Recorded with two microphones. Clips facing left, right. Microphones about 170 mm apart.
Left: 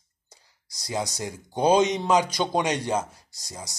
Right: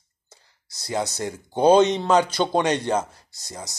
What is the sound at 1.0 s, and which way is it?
Speech, 10° left (ahead or behind).